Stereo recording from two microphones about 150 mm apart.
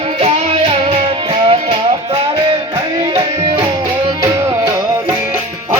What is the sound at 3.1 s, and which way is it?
Music, 25° right (ahead or behind).